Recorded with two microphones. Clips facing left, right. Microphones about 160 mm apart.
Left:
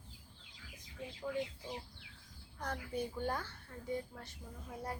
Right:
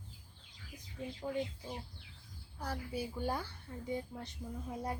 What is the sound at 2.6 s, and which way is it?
A woman's voice, 10° right (ahead or behind).